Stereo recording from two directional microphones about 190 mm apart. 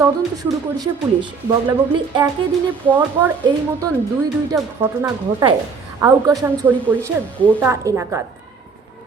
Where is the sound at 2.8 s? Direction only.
10° right (ahead or behind).